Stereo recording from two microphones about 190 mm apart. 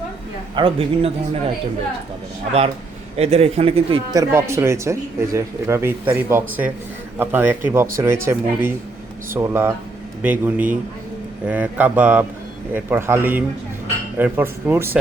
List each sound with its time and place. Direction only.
0.5 s a man's voice: 30° right (ahead or behind)
3.2 s speech: 35° right (ahead or behind)
4.1 s speech: 15° right (ahead or behind)